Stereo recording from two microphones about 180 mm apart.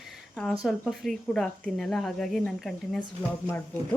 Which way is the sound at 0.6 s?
Centre (ahead or behind).